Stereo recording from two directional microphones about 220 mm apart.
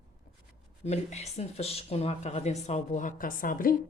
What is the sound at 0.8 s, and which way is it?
Speech, 30° left (ahead or behind).